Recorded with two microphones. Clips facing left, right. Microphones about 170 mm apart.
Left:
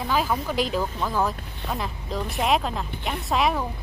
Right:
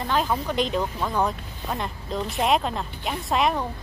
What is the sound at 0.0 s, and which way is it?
Speech, 5° left (ahead or behind).